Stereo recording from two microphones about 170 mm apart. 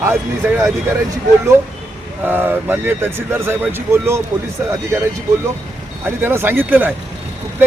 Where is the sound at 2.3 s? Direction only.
10° right (ahead or behind).